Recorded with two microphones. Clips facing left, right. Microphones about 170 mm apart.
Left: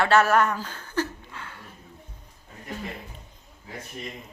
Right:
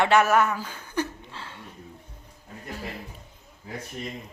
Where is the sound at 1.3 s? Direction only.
30° right (ahead or behind).